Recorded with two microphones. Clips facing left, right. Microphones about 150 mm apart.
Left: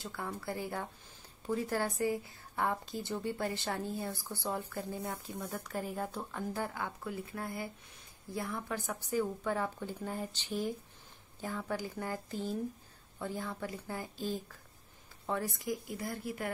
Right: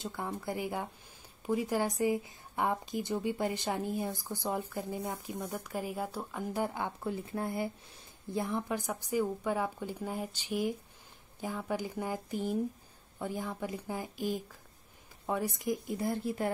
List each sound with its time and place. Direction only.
0.0 s a woman's voice: 20° right (ahead or behind)